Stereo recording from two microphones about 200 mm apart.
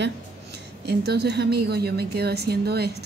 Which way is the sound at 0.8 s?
55° right (ahead or behind).